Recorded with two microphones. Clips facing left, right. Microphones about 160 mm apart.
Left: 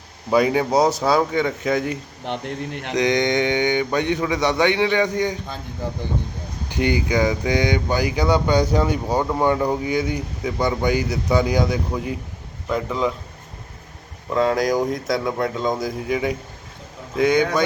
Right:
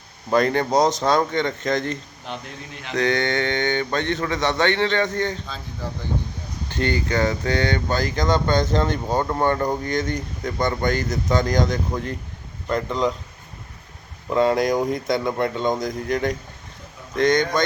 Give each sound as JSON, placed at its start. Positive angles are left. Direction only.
{"t": 0.3, "sound": "speech", "side_deg": 5}
{"t": 2.2, "sound": "speech", "side_deg": 65}
{"t": 2.9, "sound": "speech", "side_deg": 15}
{"t": 6.7, "sound": "speech", "side_deg": 10}
{"t": 14.3, "sound": "speech", "side_deg": 0}